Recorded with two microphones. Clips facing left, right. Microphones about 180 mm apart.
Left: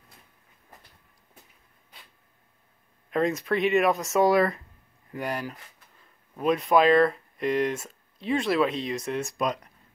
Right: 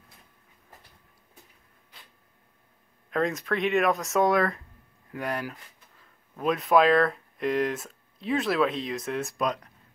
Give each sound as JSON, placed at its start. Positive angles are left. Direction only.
{"t": 3.1, "sound": "speech", "side_deg": 0}